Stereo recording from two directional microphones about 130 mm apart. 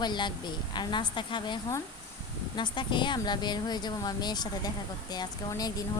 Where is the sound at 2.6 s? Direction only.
35° left (ahead or behind).